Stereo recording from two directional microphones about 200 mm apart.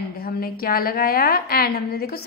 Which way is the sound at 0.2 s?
50° left (ahead or behind).